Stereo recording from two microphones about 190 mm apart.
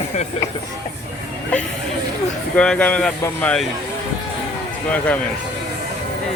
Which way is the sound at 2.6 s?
5° left (ahead or behind).